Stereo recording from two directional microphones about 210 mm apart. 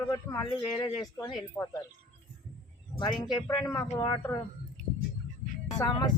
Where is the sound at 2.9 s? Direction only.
20° left (ahead or behind).